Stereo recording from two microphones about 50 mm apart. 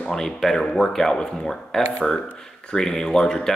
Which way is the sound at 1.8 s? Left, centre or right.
Left.